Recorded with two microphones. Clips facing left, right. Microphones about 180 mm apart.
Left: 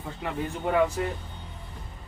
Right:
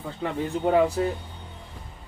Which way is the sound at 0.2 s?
30° right (ahead or behind).